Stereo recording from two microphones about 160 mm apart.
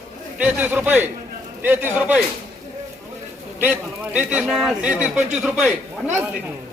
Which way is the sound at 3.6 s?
10° right (ahead or behind).